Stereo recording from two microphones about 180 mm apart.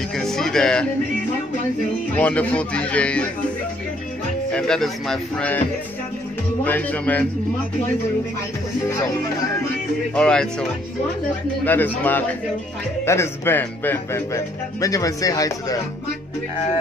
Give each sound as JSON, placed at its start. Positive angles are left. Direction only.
{"t": 0.2, "sound": "speech", "side_deg": 0}
{"t": 2.1, "sound": "a man's voice", "side_deg": 5}
{"t": 4.5, "sound": "speech", "side_deg": 5}
{"t": 6.6, "sound": "a man's voice", "side_deg": 10}
{"t": 10.1, "sound": "a man's voice", "side_deg": 5}